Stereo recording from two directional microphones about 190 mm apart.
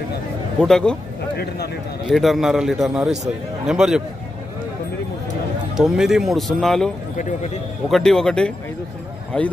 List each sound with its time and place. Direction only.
0.6 s speech: 5° left (ahead or behind)
1.3 s speech: 55° left (ahead or behind)
2.0 s speech: centre (ahead or behind)
5.8 s speech: centre (ahead or behind)
7.2 s a man's voice: 40° left (ahead or behind)
7.9 s speech: centre (ahead or behind)